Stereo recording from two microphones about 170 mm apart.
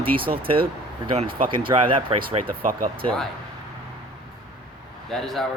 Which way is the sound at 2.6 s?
55° right (ahead or behind).